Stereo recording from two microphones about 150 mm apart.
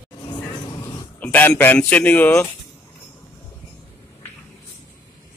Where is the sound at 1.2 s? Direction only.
10° left (ahead or behind).